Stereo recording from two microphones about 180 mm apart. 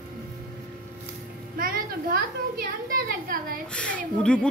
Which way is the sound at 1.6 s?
55° right (ahead or behind).